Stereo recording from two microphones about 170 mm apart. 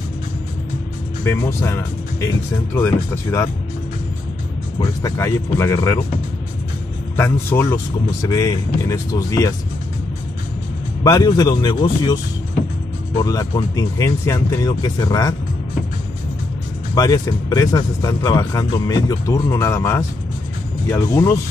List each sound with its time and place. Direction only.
1.2 s speech: 15° left (ahead or behind)
4.7 s speech: 20° left (ahead or behind)
7.2 s speech: 15° left (ahead or behind)
11.1 s speech: 20° left (ahead or behind)
16.9 s speech: 20° left (ahead or behind)